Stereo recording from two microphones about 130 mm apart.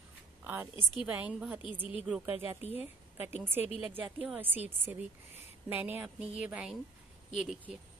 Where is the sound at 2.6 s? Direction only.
50° left (ahead or behind).